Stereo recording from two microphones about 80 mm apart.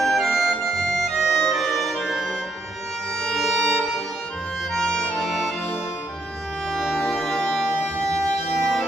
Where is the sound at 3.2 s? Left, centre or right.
Centre.